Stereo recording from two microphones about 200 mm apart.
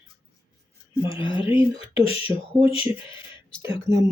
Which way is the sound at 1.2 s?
25° left (ahead or behind).